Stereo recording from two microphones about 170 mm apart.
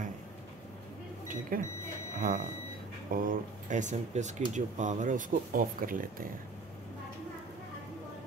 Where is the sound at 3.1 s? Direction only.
55° right (ahead or behind).